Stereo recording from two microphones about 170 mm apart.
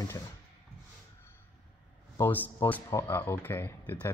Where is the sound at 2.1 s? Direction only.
10° left (ahead or behind).